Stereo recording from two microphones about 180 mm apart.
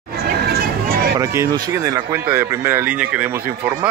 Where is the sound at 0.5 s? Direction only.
60° right (ahead or behind).